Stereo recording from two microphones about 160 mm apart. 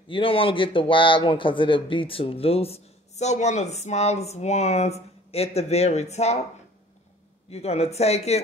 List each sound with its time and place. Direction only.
0.1 s a man's voice: 35° left (ahead or behind)
7.4 s a man's voice: 40° left (ahead or behind)